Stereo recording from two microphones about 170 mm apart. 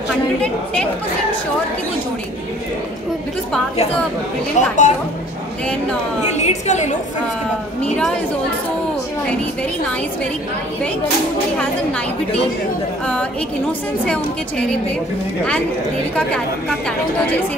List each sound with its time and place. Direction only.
4.6 s a woman's voice: 45° left (ahead or behind)
6.3 s a woman's voice: 40° left (ahead or behind)
13.0 s a woman's voice: 5° left (ahead or behind)